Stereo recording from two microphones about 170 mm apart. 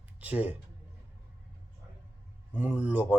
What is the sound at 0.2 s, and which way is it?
Speech, 10° right (ahead or behind).